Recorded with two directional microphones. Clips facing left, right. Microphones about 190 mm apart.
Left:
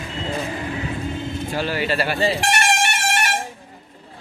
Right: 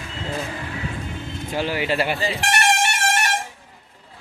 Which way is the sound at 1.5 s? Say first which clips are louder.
Right 1 dB; 15° right (ahead or behind).